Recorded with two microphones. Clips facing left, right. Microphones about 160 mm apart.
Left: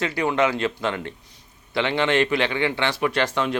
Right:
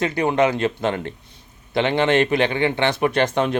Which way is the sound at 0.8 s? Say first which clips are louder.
Right 3 dB; 45° right (ahead or behind).